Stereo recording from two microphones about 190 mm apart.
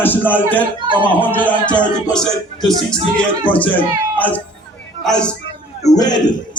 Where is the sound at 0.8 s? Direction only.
25° right (ahead or behind).